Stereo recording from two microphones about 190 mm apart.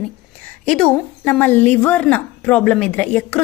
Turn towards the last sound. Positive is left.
turn(degrees=5)  # may be behind; listen again after turning